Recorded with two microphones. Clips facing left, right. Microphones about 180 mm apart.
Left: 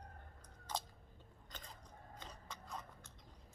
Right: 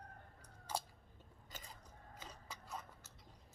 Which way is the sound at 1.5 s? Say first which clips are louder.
Even; 5° right (ahead or behind).